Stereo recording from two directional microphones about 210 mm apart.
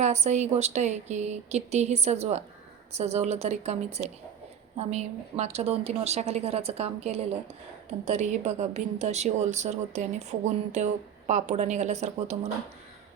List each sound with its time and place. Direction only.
0.0 s a woman's voice: 30° right (ahead or behind)